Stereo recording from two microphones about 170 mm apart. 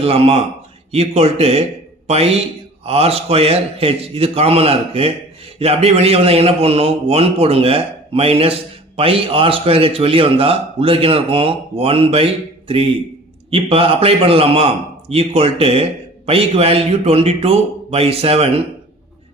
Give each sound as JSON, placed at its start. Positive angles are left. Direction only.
{"t": 0.0, "sound": "a man's voice", "side_deg": -35}